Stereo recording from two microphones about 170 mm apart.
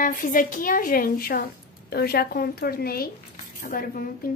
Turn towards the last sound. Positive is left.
turn(degrees=55)  # may be behind; listen again after turning